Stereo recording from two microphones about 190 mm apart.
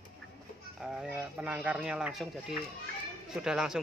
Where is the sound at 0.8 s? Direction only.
5° right (ahead or behind).